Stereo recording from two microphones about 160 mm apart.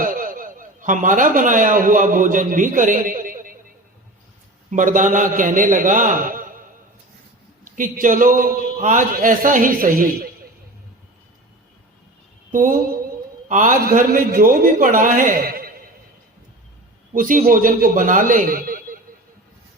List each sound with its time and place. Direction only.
0.0 s a man's voice: 65° right (ahead or behind)
4.7 s a man's voice: 55° right (ahead or behind)
12.5 s mantra: 60° right (ahead or behind)
13.5 s a man's voice: 55° right (ahead or behind)
17.2 s a man's voice: 60° right (ahead or behind)